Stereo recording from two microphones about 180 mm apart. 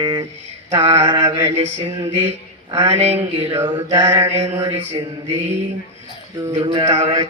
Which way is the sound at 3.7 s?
20° right (ahead or behind).